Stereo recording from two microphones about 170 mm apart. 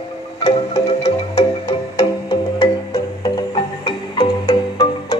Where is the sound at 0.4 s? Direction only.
40° left (ahead or behind).